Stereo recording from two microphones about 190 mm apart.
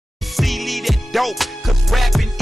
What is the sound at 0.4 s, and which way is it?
Music, centre (ahead or behind).